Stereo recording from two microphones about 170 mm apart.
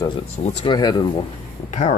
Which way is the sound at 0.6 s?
25° left (ahead or behind).